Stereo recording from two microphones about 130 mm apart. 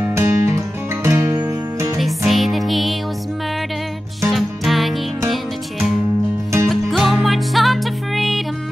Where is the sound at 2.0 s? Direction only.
Centre (ahead or behind).